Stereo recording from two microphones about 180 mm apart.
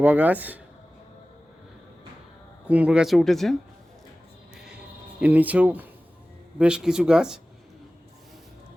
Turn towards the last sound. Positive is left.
turn(degrees=-5)  # may be behind; listen again after turning